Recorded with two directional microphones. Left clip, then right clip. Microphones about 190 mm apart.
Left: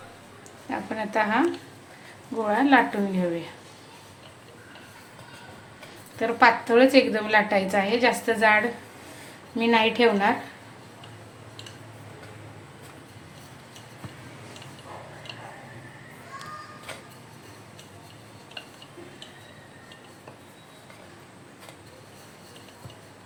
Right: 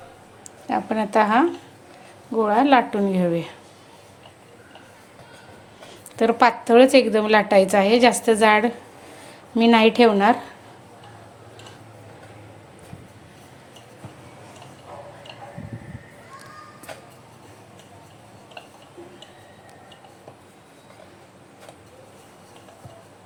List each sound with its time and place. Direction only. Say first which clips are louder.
0.7 s speech: right 7 dB; 45° right (ahead or behind)
6.1 s a woman's voice: right 2 dB; 45° right (ahead or behind)